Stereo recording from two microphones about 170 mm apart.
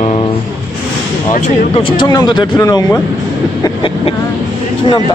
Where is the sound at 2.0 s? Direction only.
25° left (ahead or behind).